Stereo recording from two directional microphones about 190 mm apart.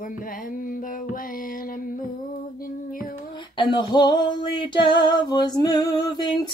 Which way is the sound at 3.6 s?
25° left (ahead or behind).